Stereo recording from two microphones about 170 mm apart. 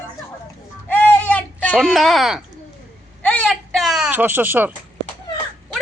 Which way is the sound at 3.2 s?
5° left (ahead or behind).